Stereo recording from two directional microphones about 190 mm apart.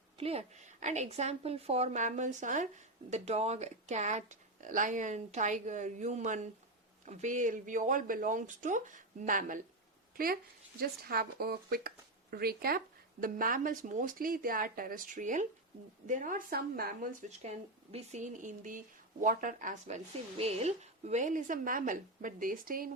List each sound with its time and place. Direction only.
0.2 s speech: 30° right (ahead or behind); by 22.9 s 50° right (ahead or behind)